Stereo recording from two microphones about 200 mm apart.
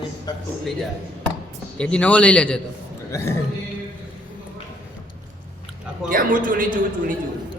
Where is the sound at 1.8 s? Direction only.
5° left (ahead or behind).